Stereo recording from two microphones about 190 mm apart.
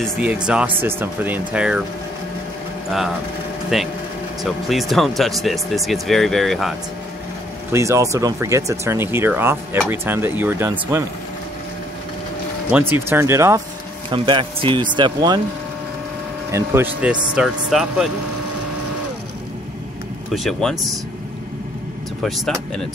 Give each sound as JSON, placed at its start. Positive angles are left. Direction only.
{"t": 0.0, "sound": "speech", "side_deg": -5}
{"t": 2.9, "sound": "speech", "side_deg": 0}
{"t": 7.7, "sound": "speech", "side_deg": -15}
{"t": 12.7, "sound": "speech", "side_deg": -10}
{"t": 14.1, "sound": "speech", "side_deg": -25}
{"t": 16.5, "sound": "speech", "side_deg": -10}
{"t": 20.3, "sound": "speech", "side_deg": 0}
{"t": 22.2, "sound": "speech", "side_deg": 0}